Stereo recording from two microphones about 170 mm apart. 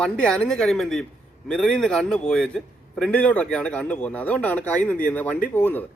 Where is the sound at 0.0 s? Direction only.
5° left (ahead or behind).